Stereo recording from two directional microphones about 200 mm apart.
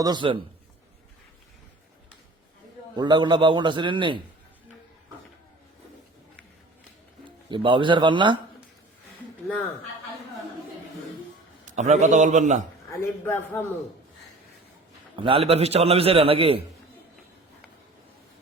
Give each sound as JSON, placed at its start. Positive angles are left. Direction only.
{"t": 0.0, "sound": "a man's voice", "side_deg": -20}
{"t": 2.9, "sound": "a man's voice", "side_deg": -20}
{"t": 7.5, "sound": "a man's voice", "side_deg": -25}
{"t": 11.6, "sound": "a man's voice", "side_deg": -35}
{"t": 12.9, "sound": "a man's voice", "side_deg": 10}
{"t": 15.1, "sound": "a man's voice", "side_deg": -25}